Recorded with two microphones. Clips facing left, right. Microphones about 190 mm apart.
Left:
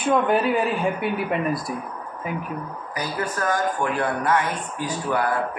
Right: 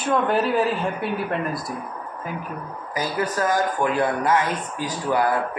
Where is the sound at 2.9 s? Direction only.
20° right (ahead or behind).